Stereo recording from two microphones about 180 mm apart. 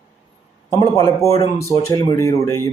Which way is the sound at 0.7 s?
20° left (ahead or behind).